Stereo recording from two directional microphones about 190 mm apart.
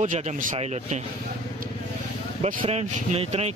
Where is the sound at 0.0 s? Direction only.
40° right (ahead or behind).